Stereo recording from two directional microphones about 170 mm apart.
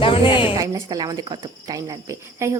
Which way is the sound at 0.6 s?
20° right (ahead or behind).